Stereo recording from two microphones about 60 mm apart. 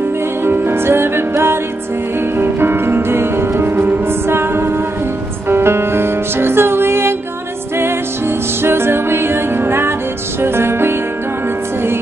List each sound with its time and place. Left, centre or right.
0.4 s music: right